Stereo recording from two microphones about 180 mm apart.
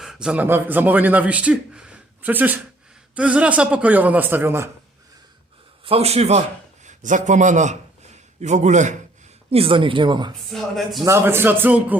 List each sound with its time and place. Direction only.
0.0 s a man's voice: 5° right (ahead or behind)
5.8 s a man's voice: 35° right (ahead or behind)
9.5 s speech: 30° right (ahead or behind)
10.5 s speech: centre (ahead or behind)
11.0 s a man's voice: 15° right (ahead or behind)